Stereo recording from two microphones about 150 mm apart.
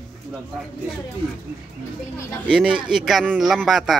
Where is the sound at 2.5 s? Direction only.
5° right (ahead or behind).